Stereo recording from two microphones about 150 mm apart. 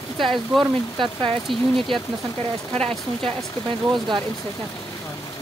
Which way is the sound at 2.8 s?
40° right (ahead or behind).